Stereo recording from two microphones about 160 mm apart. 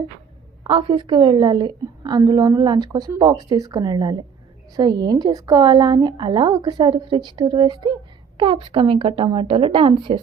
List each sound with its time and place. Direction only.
0.6 s a woman's voice: 30° right (ahead or behind)